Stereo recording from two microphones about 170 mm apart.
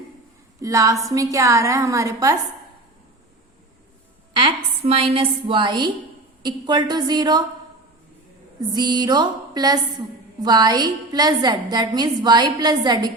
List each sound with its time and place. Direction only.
0.6 s a woman's voice: 20° right (ahead or behind)
4.4 s a woman's voice: 35° right (ahead or behind)
8.7 s a woman's voice: 25° right (ahead or behind)